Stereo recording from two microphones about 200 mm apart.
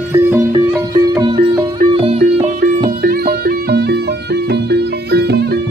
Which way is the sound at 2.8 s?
50° right (ahead or behind).